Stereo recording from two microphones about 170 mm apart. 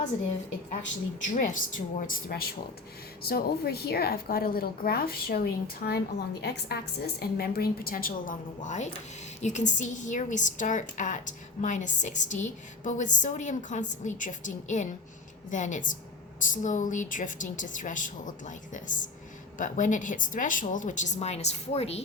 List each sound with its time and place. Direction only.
1.3 s a woman's voice: 50° left (ahead or behind); by 6.7 s 75° left (ahead or behind)
7.2 s a woman's voice: 60° left (ahead or behind); by 22.0 s 40° left (ahead or behind)